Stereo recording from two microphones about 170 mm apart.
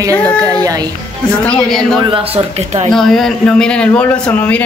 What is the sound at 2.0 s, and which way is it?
Speech, 35° right (ahead or behind).